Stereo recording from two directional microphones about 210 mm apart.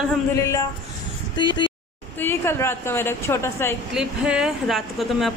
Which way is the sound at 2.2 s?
10° left (ahead or behind).